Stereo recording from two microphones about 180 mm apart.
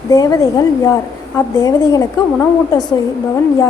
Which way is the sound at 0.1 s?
20° left (ahead or behind).